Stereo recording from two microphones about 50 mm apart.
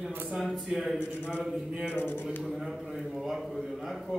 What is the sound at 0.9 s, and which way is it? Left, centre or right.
A man's voice, left.